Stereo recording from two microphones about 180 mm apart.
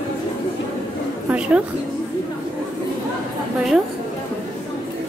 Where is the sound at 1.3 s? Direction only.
5° right (ahead or behind).